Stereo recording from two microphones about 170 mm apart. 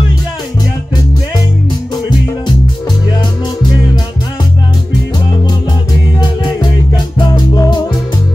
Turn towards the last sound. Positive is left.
turn(degrees=25)  # may be behind; listen again after turning